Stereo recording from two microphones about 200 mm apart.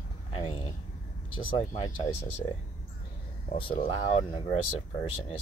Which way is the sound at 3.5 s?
30° left (ahead or behind).